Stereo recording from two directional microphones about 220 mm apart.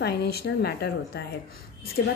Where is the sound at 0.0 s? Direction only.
45° left (ahead or behind).